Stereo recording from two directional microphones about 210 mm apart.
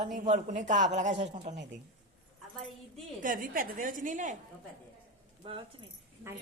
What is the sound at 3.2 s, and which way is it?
Speech, 40° right (ahead or behind).